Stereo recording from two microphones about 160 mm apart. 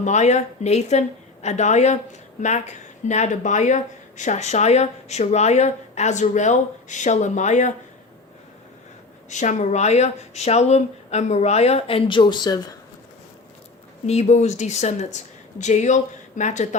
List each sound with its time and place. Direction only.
0.0 s speech: 45° left (ahead or behind)
9.3 s speech: 50° left (ahead or behind); by 12.7 s 25° left (ahead or behind)
14.1 s speech: 45° left (ahead or behind)